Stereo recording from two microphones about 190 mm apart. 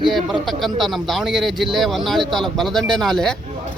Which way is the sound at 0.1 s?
Centre (ahead or behind).